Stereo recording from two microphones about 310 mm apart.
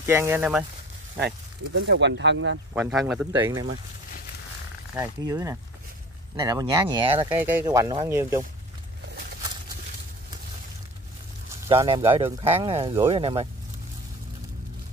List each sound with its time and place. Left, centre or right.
0.0 s speech: centre
1.2 s speech: right
2.7 s a man's voice: centre
4.9 s speech: centre
11.6 s speech: centre